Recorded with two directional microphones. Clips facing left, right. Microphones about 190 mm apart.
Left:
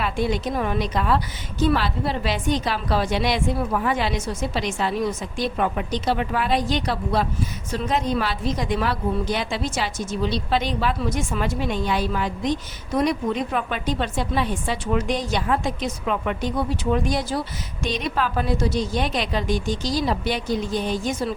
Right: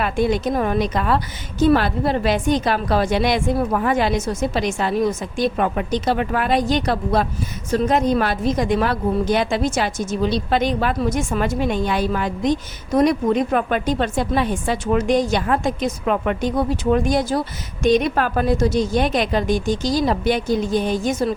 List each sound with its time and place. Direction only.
0.0 s a woman's voice: 50° right (ahead or behind)